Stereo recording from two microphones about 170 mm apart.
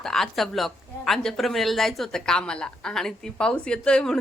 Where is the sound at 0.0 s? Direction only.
Centre (ahead or behind).